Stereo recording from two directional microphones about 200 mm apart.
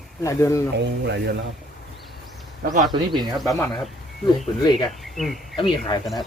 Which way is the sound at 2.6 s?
40° right (ahead or behind).